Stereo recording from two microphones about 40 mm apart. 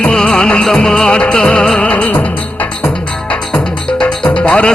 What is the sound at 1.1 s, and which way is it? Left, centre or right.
Music, left.